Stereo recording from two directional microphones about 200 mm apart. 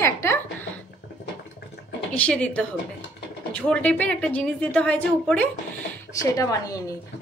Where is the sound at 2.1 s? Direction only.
5° left (ahead or behind).